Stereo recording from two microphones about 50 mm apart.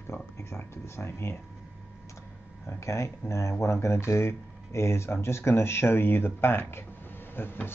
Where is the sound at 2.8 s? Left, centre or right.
Left.